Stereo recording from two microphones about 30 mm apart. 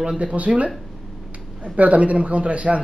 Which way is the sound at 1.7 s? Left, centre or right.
Right.